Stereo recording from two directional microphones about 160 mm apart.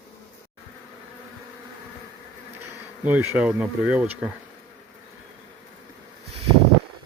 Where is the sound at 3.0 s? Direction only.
15° right (ahead or behind).